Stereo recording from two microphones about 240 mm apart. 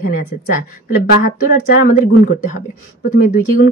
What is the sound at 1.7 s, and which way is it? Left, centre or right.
Speech, left.